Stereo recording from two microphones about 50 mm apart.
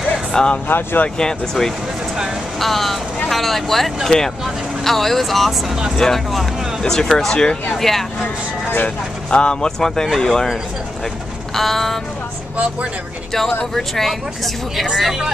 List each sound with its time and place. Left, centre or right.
0.1 s a sound: centre
0.7 s speech: left
1.0 s speech: centre
8.8 s speech: centre
11.5 s speech: centre
13.7 s speech: centre